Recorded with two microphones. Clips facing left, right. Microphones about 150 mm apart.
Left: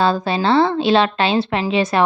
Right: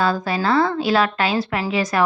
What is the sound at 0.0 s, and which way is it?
A woman's voice, 25° left (ahead or behind).